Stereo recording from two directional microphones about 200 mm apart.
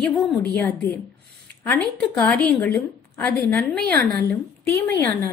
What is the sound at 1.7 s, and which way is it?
A woman's voice, 10° left (ahead or behind).